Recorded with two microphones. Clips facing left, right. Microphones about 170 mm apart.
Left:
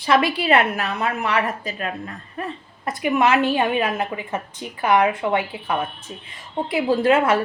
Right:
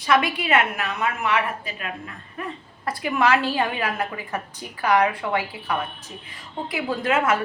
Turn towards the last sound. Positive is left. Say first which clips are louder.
# left 5 dB
turn(degrees=30)  # may be behind; listen again after turning